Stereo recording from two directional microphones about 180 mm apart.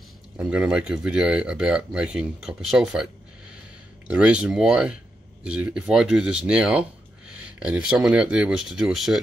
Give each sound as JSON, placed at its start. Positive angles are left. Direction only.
{"t": 0.4, "sound": "speech", "side_deg": -5}
{"t": 4.1, "sound": "speech", "side_deg": -5}